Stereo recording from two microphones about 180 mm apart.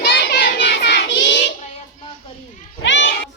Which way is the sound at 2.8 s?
80° left.